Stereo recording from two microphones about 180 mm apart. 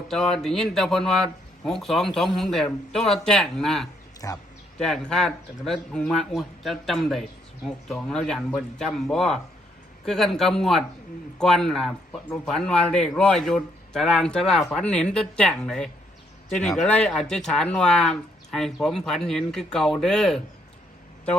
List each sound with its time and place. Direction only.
0.1 s speech: centre (ahead or behind)
4.2 s a man's voice: 20° left (ahead or behind)
4.8 s speech: 5° left (ahead or behind)